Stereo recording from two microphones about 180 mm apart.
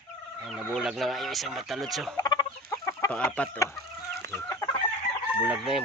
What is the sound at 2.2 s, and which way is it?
Chicken, 20° left (ahead or behind).